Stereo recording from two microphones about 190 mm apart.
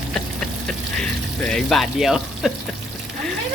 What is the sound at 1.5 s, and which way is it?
Speech, centre (ahead or behind).